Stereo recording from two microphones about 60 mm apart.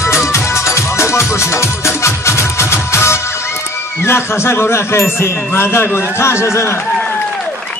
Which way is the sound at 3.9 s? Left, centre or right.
Left.